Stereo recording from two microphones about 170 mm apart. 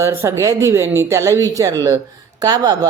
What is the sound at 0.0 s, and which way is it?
Speech, 15° right (ahead or behind).